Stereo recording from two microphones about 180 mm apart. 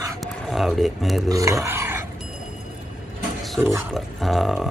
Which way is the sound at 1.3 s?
20° right (ahead or behind).